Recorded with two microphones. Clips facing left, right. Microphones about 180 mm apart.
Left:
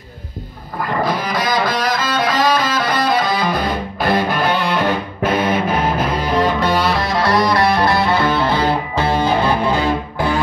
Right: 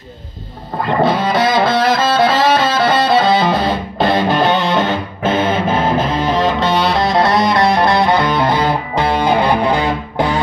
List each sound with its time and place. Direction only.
0.8 s music: 25° right (ahead or behind)